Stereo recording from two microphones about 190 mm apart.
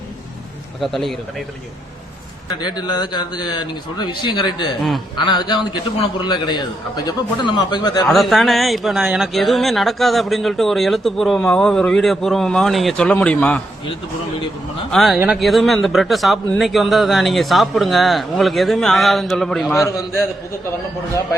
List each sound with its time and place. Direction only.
0.8 s speech: centre (ahead or behind)
2.6 s a man's voice: 20° left (ahead or behind)
8.0 s speech: centre (ahead or behind)
14.8 s speech: centre (ahead or behind)